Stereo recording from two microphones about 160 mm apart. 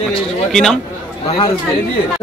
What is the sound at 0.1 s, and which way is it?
Speech, 5° left (ahead or behind).